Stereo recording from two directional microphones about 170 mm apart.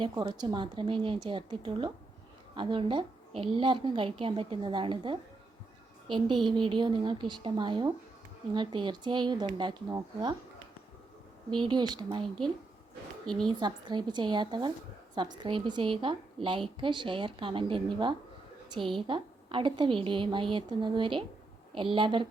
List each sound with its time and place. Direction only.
0.0 s a woman's voice: 25° right (ahead or behind)
11.5 s a woman's voice: 25° right (ahead or behind)
13.2 s speech: 5° left (ahead or behind)
13.5 s a woman's voice: 25° right (ahead or behind)